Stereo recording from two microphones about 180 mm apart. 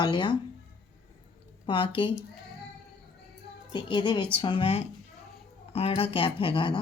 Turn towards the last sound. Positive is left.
turn(degrees=25)  # may be behind; listen again after turning